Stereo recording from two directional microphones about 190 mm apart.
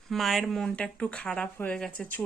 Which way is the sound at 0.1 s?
Centre (ahead or behind).